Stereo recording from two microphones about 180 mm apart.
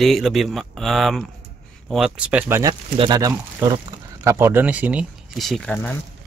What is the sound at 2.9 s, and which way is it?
Speech, 25° right (ahead or behind).